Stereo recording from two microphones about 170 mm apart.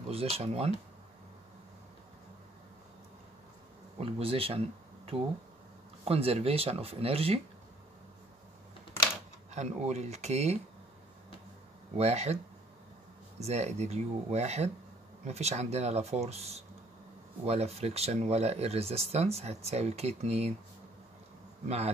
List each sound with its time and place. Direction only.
0.1 s speech: 35° right (ahead or behind)
4.0 s speech: 35° right (ahead or behind)
9.5 s speech: 40° right (ahead or behind)
12.0 s speech: 40° right (ahead or behind)
13.4 s speech: 40° right (ahead or behind)
21.6 s speech: 40° right (ahead or behind)